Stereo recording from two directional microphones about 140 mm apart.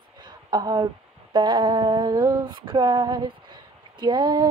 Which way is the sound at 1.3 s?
30° right (ahead or behind).